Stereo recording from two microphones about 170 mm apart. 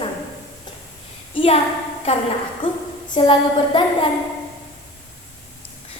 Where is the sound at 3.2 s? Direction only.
30° left (ahead or behind).